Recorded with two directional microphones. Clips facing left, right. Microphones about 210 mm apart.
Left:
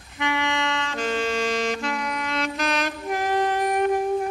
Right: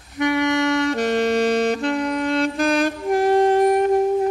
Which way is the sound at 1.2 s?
60° right (ahead or behind).